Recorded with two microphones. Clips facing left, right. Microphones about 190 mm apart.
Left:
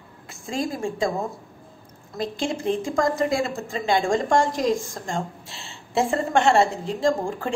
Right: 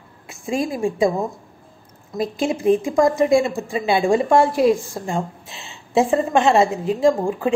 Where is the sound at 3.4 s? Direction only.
15° right (ahead or behind).